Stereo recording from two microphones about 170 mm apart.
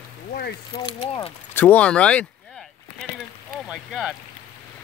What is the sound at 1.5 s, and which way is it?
Speech, 10° left (ahead or behind).